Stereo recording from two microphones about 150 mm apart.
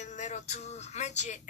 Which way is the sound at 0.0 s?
55° left (ahead or behind).